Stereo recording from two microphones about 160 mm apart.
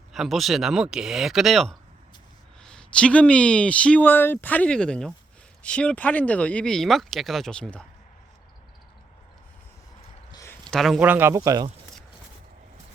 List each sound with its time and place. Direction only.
0.1 s speech: centre (ahead or behind)
10.3 s a sound: 15° left (ahead or behind)
10.6 s speech: centre (ahead or behind)
11.0 s speech: 10° right (ahead or behind)